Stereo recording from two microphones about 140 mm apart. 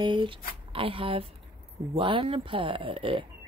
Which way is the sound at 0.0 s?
35° right (ahead or behind).